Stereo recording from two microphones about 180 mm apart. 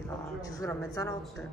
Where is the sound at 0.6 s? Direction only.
20° left (ahead or behind).